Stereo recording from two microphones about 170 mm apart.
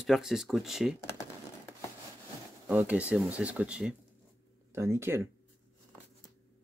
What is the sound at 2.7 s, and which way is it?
Speech, 10° right (ahead or behind).